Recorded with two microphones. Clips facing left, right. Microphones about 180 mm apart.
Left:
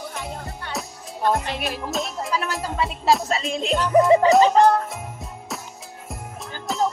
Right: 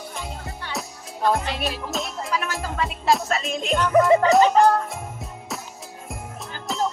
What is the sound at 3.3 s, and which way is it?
Music, 25° left (ahead or behind).